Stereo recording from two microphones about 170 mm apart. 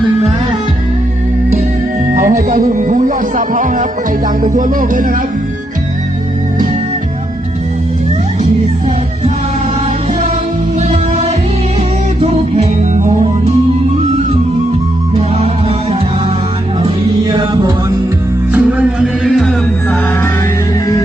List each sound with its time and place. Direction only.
2.1 s speech: 50° right (ahead or behind)
4.4 s music: 50° right (ahead or behind)
10.8 s music: 40° right (ahead or behind)
16.8 s music: 30° right (ahead or behind)
18.5 s music: 5° right (ahead or behind)